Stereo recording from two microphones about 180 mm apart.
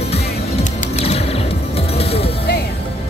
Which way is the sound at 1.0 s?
35° left (ahead or behind).